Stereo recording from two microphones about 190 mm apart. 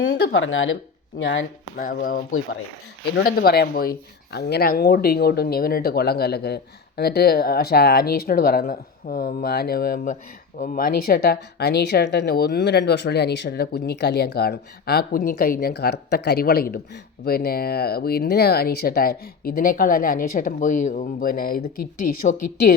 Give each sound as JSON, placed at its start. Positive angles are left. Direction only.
{"t": 0.1, "sound": "speech", "side_deg": 75}
{"t": 1.2, "sound": "speech", "side_deg": 75}
{"t": 1.7, "sound": "speech", "side_deg": 45}
{"t": 3.2, "sound": "speech", "side_deg": 55}